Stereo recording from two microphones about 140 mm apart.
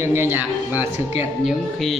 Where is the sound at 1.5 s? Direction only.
Centre (ahead or behind).